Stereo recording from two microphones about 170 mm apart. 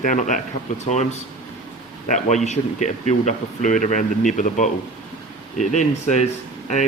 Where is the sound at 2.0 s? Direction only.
45° left (ahead or behind).